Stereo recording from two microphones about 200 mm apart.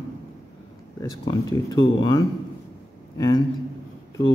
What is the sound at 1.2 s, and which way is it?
Speech, 20° left (ahead or behind).